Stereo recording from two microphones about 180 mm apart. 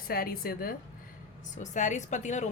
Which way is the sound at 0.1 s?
55° left (ahead or behind).